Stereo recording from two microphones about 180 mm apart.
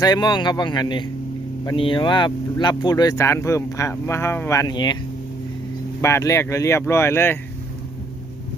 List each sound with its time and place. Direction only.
0.0 s speech: 25° left (ahead or behind)
6.0 s speech: 15° left (ahead or behind)